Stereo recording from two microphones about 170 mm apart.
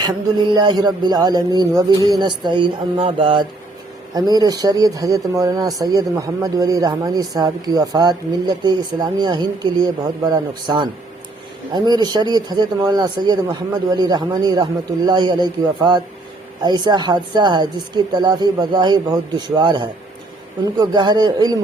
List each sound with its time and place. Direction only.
0.0 s speech: 25° right (ahead or behind)